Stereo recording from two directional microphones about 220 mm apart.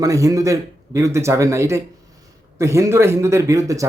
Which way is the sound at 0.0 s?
15° right (ahead or behind).